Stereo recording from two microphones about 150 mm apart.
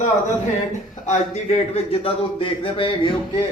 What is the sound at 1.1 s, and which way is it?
Speech, 50° left (ahead or behind).